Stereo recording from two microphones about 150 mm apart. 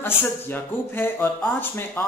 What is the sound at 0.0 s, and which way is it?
Speech, 15° left (ahead or behind).